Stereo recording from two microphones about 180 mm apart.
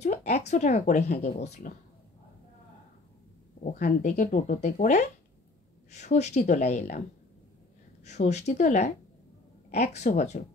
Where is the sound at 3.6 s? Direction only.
45° left (ahead or behind).